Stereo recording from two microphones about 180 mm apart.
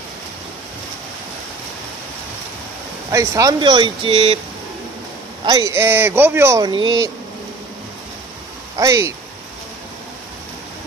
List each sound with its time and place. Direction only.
3.1 s speech: 20° right (ahead or behind)
5.4 s speech: 20° right (ahead or behind)
8.7 s speech: 15° right (ahead or behind)